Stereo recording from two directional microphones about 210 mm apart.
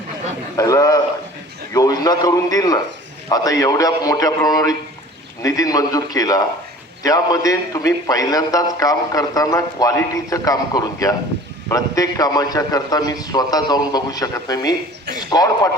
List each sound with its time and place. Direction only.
0.5 s a man's voice: 15° left (ahead or behind)